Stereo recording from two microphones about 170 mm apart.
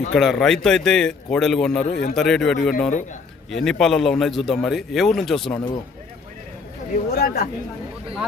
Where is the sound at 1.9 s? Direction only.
70° left (ahead or behind).